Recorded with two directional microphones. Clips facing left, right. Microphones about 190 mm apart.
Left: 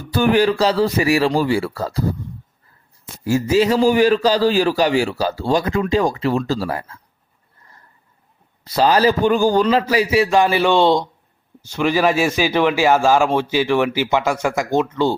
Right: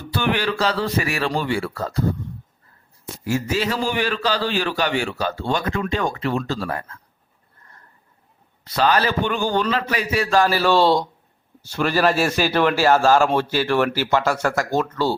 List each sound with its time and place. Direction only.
0.0 s a sound: 40° left (ahead or behind)
1.2 s a man's voice: 35° left (ahead or behind)
3.2 s a man's voice: 35° left (ahead or behind)
8.6 s a man's voice: 35° left (ahead or behind)
10.0 s a man's voice: 25° left (ahead or behind)